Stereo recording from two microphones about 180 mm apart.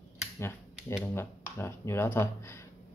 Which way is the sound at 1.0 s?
10° left (ahead or behind).